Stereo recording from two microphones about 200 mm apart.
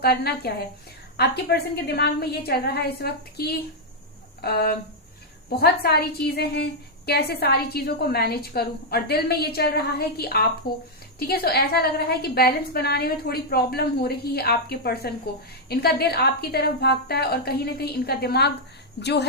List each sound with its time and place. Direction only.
0.0 s a woman's voice: 50° left (ahead or behind)